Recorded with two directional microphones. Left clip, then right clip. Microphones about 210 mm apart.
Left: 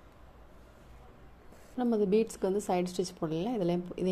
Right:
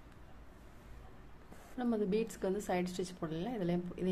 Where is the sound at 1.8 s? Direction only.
20° left (ahead or behind).